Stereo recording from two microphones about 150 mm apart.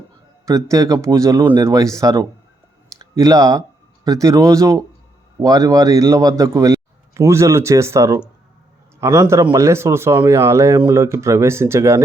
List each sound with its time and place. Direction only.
0.4 s speech: 20° right (ahead or behind)